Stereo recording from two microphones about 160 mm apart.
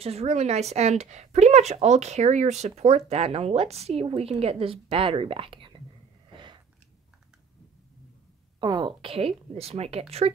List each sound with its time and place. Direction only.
0.0 s a woman's voice: 40° right (ahead or behind)
6.3 s a sound: 30° right (ahead or behind)
8.5 s a woman's voice: 30° right (ahead or behind)